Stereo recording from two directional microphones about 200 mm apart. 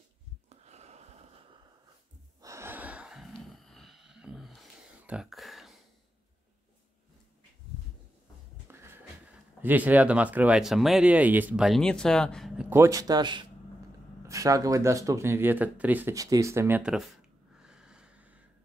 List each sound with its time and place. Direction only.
0.5 s a sound: 35° right (ahead or behind)
2.4 s gasp: 15° right (ahead or behind)
8.6 s music: 10° right (ahead or behind)
9.6 s speech: 10° right (ahead or behind)